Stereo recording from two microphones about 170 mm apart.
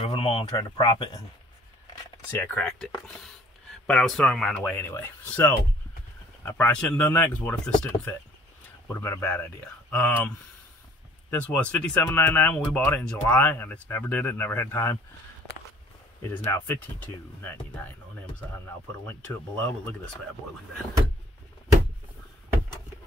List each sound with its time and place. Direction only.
0.0 s a sound: 30° left (ahead or behind)
0.6 s speech: 30° left (ahead or behind)
2.3 s speech: 10° left (ahead or behind)
16.4 s speech: 15° left (ahead or behind)
19.0 s speech: 5° left (ahead or behind)